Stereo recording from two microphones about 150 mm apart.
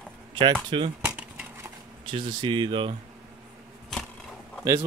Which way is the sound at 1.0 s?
10° right (ahead or behind).